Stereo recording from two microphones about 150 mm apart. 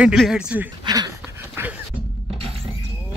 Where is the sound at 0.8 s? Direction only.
25° right (ahead or behind).